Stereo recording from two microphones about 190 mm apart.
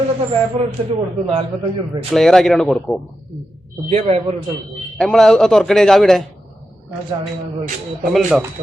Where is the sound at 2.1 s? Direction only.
5° left (ahead or behind).